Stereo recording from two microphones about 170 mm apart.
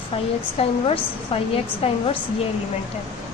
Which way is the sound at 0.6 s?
35° left (ahead or behind).